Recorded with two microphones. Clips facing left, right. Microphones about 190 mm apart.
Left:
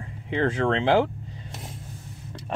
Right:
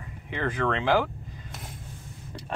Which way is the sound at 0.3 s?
25° left (ahead or behind).